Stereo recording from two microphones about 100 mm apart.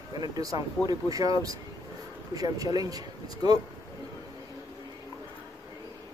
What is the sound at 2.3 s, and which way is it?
Speech, 40° right (ahead or behind).